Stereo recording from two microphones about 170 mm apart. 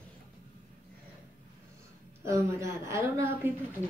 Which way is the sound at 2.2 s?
15° right (ahead or behind).